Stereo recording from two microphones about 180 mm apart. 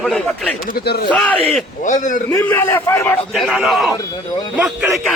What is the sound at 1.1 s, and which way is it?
Speech, 5° left (ahead or behind).